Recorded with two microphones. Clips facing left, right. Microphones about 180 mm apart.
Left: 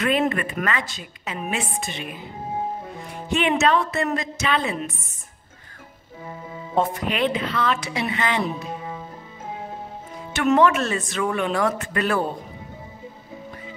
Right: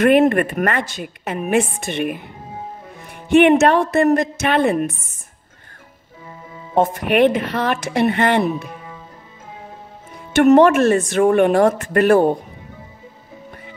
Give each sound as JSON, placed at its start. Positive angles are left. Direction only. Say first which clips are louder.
{"t": 0.0, "sound": "a woman's voice", "louder": "right 9 dB", "side_deg": -55}
{"t": 3.4, "sound": "a woman's voice", "louder": "right 7 dB", "side_deg": -55}
{"t": 6.7, "sound": "a woman's voice", "louder": "right 6 dB", "side_deg": -55}
{"t": 10.3, "sound": "a woman's voice", "louder": "right 7 dB", "side_deg": -50}